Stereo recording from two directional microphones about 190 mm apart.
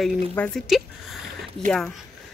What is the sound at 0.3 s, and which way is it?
Speech, 5° left (ahead or behind).